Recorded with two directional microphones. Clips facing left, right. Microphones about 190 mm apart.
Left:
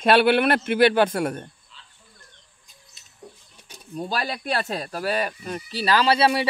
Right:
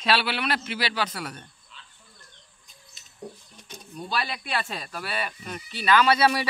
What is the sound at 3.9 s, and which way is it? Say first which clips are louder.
Speech: left 3 dB; 40° left (ahead or behind).